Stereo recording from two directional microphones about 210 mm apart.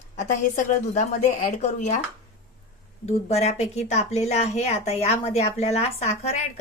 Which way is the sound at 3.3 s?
30° left (ahead or behind).